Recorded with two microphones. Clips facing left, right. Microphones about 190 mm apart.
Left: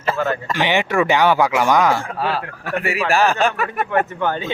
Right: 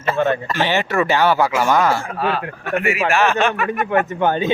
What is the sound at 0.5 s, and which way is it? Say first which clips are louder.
Speech: even; 15° left (ahead or behind).